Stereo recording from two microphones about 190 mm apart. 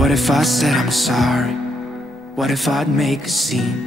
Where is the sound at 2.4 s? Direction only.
Centre (ahead or behind).